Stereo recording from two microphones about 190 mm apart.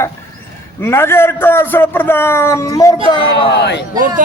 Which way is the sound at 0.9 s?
15° left (ahead or behind).